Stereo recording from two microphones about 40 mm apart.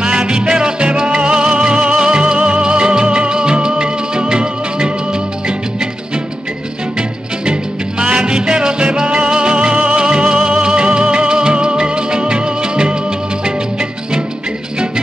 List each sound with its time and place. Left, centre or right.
0.0 s music: right
8.0 s music: right